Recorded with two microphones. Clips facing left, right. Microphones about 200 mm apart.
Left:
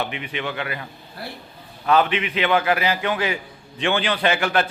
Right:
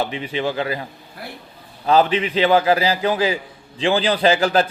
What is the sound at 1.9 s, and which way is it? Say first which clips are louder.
A man's voice: right 3 dB; 35° right (ahead or behind).